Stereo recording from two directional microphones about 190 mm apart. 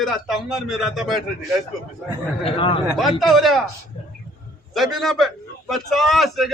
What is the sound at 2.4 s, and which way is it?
Speech, 25° left (ahead or behind).